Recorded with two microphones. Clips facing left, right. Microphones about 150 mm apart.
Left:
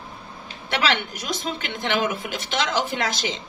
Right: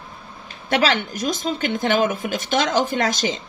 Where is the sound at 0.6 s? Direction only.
45° right (ahead or behind).